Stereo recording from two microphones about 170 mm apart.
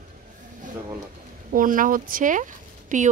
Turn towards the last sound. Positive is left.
turn(degrees=-45)  # may be behind; listen again after turning